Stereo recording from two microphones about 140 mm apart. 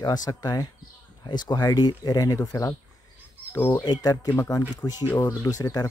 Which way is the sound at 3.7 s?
30° left (ahead or behind).